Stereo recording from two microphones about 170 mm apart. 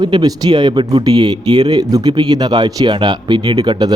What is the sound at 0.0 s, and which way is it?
Speech, 25° right (ahead or behind).